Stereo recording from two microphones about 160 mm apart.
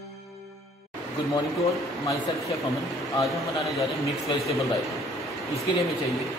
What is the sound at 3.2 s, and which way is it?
Speech, centre (ahead or behind).